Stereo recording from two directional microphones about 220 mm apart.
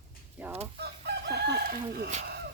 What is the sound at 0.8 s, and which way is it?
Chicken, 50° right (ahead or behind).